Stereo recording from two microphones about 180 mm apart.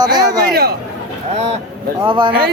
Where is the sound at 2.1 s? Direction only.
25° right (ahead or behind).